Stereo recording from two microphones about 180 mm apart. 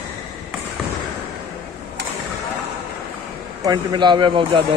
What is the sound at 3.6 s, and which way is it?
Speech, 25° right (ahead or behind).